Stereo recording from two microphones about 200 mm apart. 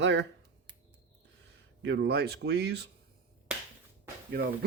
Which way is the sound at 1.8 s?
60° right (ahead or behind).